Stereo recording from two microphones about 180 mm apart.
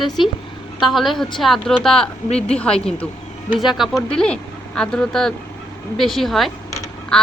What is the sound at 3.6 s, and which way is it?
Speech, centre (ahead or behind).